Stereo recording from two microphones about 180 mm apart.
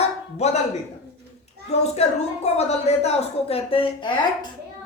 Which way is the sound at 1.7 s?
35° left (ahead or behind).